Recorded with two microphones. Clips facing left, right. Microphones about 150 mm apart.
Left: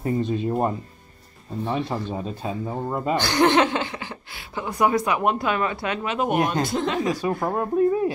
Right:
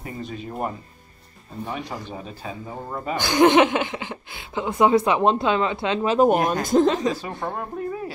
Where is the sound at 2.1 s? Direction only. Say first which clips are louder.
Left 5 dB; 30° left (ahead or behind).